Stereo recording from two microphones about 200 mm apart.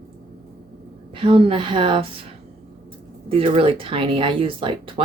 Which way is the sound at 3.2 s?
30° right (ahead or behind).